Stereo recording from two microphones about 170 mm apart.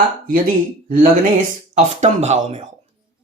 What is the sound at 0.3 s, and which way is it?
Speech, 55° right (ahead or behind).